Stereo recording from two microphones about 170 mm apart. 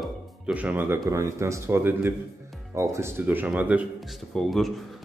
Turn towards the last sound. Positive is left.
turn(degrees=0)  # may be behind; listen again after turning